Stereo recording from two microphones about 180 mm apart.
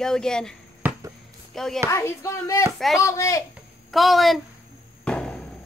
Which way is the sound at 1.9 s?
15° left (ahead or behind).